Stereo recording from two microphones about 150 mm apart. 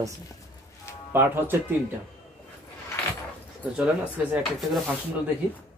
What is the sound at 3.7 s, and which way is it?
Speech, 10° right (ahead or behind).